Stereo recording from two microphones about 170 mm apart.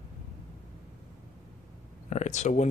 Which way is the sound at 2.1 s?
45° left (ahead or behind).